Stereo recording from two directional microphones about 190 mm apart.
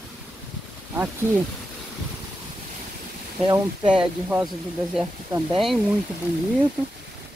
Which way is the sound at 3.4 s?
25° right (ahead or behind).